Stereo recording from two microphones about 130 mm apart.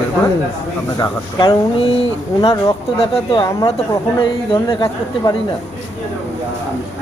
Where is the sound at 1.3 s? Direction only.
40° left (ahead or behind).